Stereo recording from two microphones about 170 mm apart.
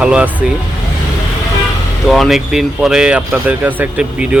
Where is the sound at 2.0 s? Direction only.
Centre (ahead or behind).